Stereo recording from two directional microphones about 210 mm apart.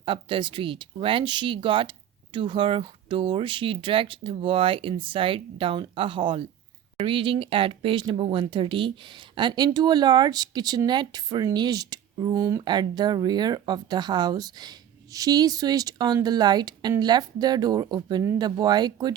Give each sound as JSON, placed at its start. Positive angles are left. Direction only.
{"t": 0.0, "sound": "speech", "side_deg": -25}